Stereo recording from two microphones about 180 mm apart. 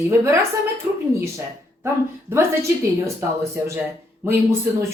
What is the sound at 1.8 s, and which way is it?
Speech, 15° right (ahead or behind).